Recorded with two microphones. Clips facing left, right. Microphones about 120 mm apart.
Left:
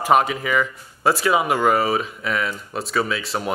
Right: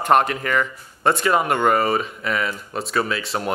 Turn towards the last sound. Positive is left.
turn(degrees=0)  # may be behind; listen again after turning